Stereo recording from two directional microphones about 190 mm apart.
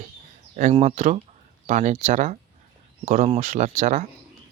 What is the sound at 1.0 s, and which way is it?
Speech, 40° right (ahead or behind).